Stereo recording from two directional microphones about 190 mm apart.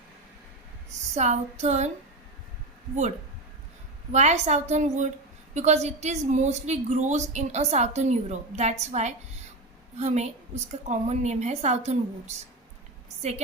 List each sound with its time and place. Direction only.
1.1 s a woman's voice: 35° right (ahead or behind)
4.1 s a woman's voice: 35° right (ahead or behind)